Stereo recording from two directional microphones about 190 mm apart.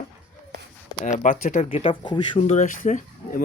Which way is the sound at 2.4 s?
35° left (ahead or behind).